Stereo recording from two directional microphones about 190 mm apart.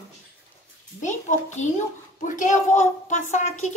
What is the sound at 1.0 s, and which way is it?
A child's voice, 40° left (ahead or behind).